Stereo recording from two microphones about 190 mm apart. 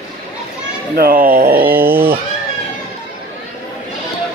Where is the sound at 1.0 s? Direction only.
50° right (ahead or behind).